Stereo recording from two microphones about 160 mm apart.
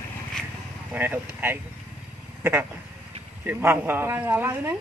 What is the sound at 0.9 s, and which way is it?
A woman's voice, 10° right (ahead or behind).